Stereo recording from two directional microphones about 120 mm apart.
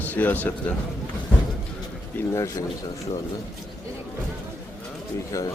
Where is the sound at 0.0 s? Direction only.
15° left (ahead or behind).